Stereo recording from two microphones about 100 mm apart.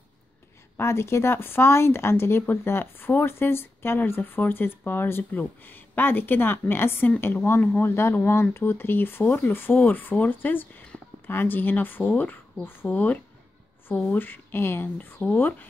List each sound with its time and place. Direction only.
0.7 s speech: 25° left (ahead or behind)